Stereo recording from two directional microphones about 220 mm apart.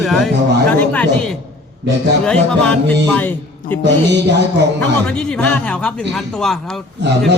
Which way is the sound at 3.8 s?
50° right (ahead or behind).